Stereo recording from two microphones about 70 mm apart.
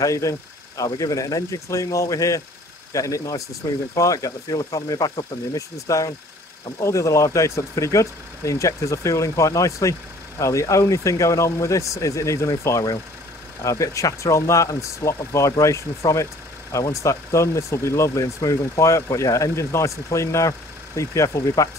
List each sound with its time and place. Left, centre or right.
0.0 s speech: left